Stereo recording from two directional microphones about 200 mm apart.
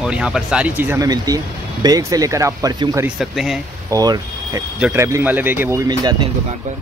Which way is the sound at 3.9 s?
20° right (ahead or behind).